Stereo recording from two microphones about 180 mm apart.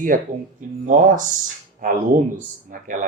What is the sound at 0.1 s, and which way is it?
Speech, 50° right (ahead or behind).